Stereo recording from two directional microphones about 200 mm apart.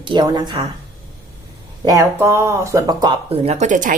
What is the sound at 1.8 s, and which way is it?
Speech, 15° right (ahead or behind).